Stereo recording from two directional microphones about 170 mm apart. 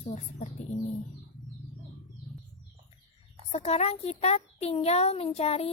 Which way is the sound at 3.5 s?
40° left (ahead or behind).